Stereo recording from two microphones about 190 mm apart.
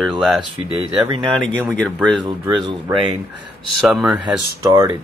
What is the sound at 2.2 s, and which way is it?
Speech, 20° right (ahead or behind).